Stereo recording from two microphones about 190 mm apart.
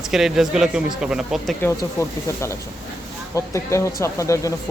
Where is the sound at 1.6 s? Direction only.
15° left (ahead or behind).